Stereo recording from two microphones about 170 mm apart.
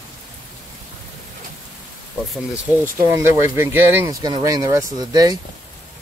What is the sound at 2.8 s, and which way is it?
Speech, 15° right (ahead or behind).